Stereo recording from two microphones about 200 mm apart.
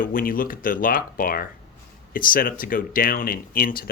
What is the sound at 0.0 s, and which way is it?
Speech, 45° left (ahead or behind).